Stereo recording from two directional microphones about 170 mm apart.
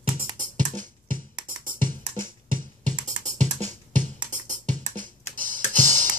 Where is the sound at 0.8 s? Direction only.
55° right (ahead or behind).